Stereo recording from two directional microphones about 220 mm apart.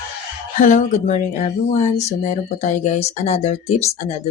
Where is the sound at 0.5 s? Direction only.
35° left (ahead or behind).